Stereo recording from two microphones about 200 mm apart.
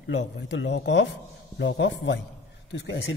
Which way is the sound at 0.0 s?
60° left (ahead or behind).